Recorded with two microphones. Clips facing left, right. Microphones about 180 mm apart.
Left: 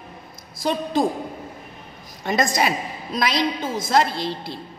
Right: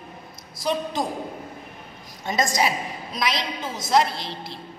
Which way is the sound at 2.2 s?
60° left (ahead or behind).